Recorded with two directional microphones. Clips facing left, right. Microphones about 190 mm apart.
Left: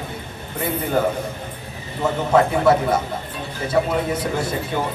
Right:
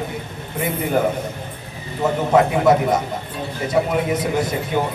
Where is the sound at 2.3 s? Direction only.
20° right (ahead or behind).